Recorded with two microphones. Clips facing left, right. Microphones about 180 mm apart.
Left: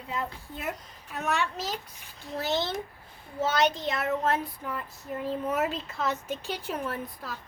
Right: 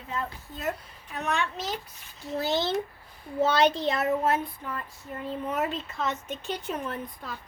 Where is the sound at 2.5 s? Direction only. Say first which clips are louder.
Right 2 dB; 20° right (ahead or behind).